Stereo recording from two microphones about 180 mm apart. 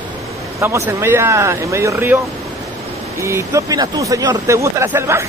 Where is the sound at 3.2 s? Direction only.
15° right (ahead or behind).